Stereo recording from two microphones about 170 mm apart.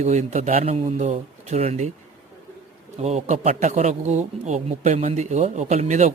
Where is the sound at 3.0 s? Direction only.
40° right (ahead or behind).